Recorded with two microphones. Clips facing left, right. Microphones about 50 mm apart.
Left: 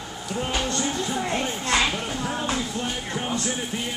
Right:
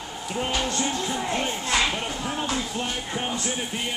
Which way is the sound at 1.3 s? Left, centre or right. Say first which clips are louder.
Left 1 dB; centre.